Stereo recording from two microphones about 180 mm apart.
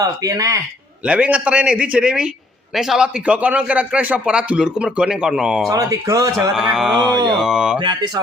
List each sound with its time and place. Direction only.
0.0 s speech: 20° right (ahead or behind)
1.0 s a man's voice: 5° right (ahead or behind)
5.6 s speech: 20° right (ahead or behind)
6.6 s a man's voice: 5° right (ahead or behind)
7.8 s speech: 25° right (ahead or behind)